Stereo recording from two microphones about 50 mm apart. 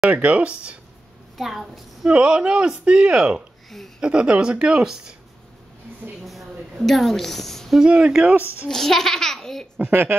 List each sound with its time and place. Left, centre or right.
0.1 s speech: right
1.4 s a woman's voice: centre
2.0 s speech: right
6.2 s a woman's voice: centre
7.8 s speech: centre
8.6 s a child's voice: centre
9.8 s speech: right